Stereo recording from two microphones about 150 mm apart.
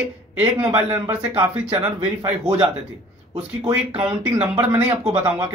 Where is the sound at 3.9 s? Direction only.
35° right (ahead or behind).